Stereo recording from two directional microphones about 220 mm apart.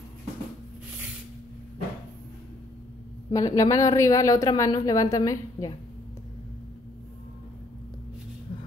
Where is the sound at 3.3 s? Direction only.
15° left (ahead or behind).